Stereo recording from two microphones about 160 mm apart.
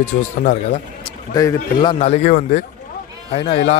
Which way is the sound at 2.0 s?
45° left (ahead or behind).